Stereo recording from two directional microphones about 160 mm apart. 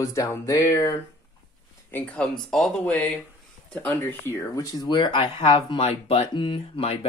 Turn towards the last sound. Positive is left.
turn(degrees=35)  # may be behind; listen again after turning